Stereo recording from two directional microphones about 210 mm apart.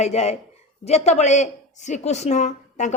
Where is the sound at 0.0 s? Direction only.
30° left (ahead or behind).